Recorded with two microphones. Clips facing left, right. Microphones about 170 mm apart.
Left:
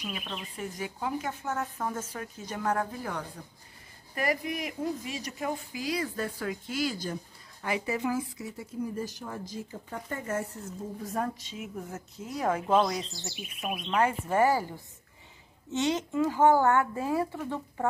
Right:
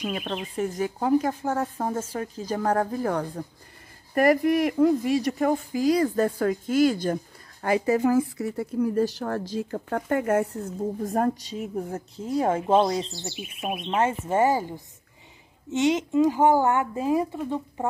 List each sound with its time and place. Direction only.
0.3 s speech: 50° right (ahead or behind)
8.2 s speech: 60° right (ahead or behind); by 17.8 s 15° right (ahead or behind)